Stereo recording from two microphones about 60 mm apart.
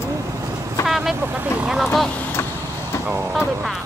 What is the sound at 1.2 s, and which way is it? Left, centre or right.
Speech, right.